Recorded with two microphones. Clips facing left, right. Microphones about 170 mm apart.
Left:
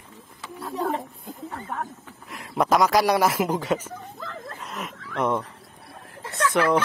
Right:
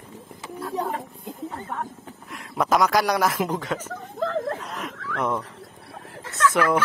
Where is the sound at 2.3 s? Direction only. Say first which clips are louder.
Left 1 dB; centre (ahead or behind).